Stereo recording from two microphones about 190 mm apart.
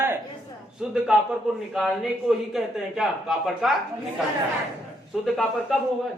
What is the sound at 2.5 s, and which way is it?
A man's voice, centre (ahead or behind).